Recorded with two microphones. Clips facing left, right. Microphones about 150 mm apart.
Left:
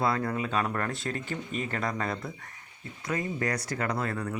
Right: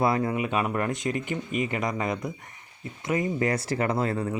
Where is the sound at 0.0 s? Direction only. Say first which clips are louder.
Right 4 dB; 20° right (ahead or behind).